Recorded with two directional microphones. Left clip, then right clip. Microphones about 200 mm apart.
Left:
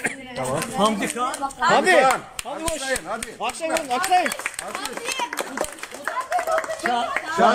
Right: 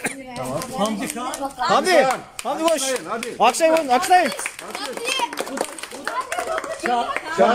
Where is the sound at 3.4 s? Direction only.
45° right (ahead or behind).